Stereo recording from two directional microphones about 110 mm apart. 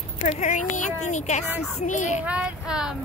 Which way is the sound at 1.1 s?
90° left.